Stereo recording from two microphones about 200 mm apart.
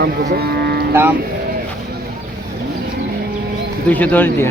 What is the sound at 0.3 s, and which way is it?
Speech, 50° right (ahead or behind).